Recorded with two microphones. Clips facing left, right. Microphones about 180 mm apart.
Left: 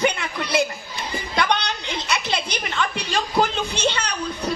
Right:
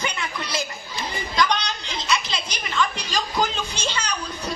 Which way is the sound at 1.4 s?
60° left (ahead or behind).